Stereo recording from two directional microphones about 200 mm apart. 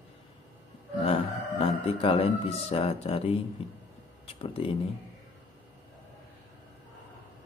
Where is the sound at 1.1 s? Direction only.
30° left (ahead or behind).